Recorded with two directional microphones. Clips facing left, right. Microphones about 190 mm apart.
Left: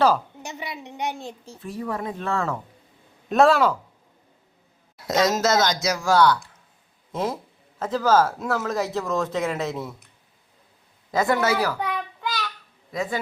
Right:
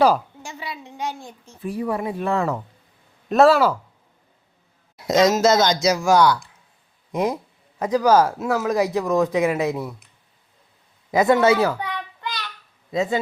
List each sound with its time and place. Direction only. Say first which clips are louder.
0.4 s a woman's voice: even; 20° left (ahead or behind)
1.6 s speech: right 5 dB; 10° right (ahead or behind)
3.2 s speech: right 3 dB; centre (ahead or behind)
4.9 s speech: right 5 dB; 15° right (ahead or behind)
11.1 s speech: right 5 dB; 20° right (ahead or behind)
12.9 s speech: right 6 dB; 25° right (ahead or behind)